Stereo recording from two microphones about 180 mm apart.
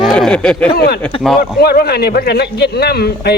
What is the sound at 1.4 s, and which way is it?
A man's voice, 60° left (ahead or behind).